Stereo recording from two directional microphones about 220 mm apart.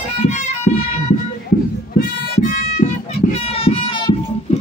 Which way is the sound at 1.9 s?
35° left (ahead or behind).